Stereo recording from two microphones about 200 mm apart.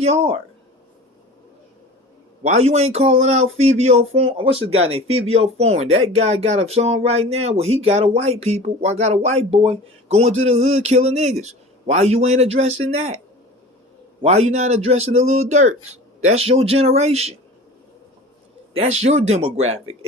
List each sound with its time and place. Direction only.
0.0 s speech: 30° right (ahead or behind)
2.4 s speech: 35° right (ahead or behind)
14.2 s speech: 35° right (ahead or behind)
18.7 s speech: 35° right (ahead or behind)